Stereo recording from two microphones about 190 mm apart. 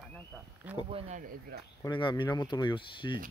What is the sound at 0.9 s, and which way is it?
Speech, 40° right (ahead or behind).